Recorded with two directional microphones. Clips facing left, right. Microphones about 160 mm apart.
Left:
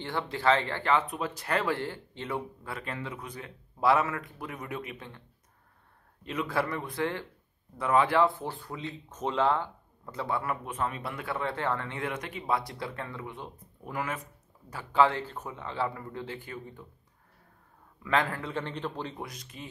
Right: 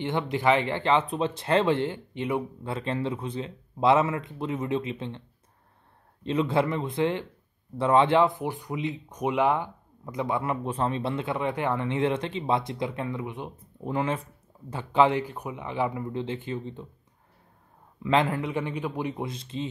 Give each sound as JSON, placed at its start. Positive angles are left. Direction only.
{"t": 0.0, "sound": "speech", "side_deg": -20}
{"t": 6.2, "sound": "speech", "side_deg": -25}
{"t": 18.0, "sound": "speech", "side_deg": -20}